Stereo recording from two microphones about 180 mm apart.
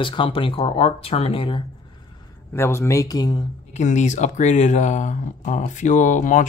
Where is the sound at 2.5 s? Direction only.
15° left (ahead or behind).